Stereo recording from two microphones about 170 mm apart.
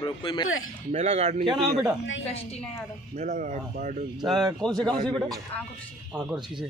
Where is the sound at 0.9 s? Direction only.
40° right (ahead or behind).